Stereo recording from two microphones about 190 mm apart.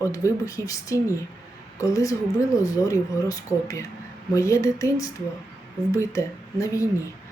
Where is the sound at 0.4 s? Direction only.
15° left (ahead or behind).